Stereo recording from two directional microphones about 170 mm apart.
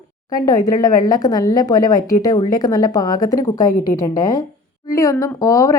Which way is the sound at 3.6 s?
55° left (ahead or behind).